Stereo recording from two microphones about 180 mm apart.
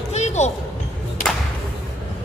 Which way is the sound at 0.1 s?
40° left (ahead or behind).